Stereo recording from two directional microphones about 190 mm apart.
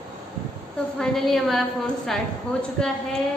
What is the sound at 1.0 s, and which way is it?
Speech, centre (ahead or behind).